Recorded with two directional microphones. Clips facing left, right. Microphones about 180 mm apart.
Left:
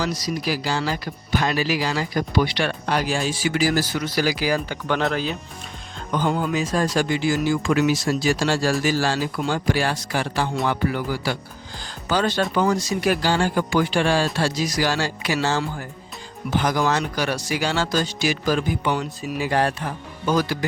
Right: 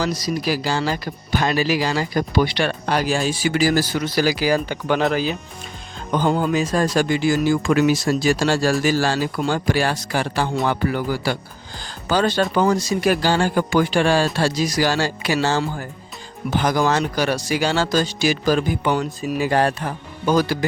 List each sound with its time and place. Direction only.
0.0 s speech: 35° right (ahead or behind)
4.9 s speech: 5° right (ahead or behind)
6.1 s speech: 35° right (ahead or behind)
6.6 s speech: 50° right (ahead or behind); by 15.6 s 30° right (ahead or behind)
16.6 s speech: 35° right (ahead or behind)
18.9 s speech: 45° right (ahead or behind)